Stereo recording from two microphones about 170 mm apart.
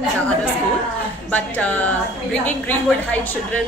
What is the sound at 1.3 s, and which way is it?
A woman's voice, 10° left (ahead or behind).